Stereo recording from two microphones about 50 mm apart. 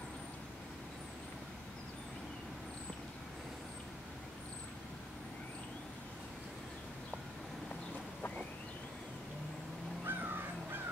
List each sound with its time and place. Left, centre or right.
10.0 s crow: right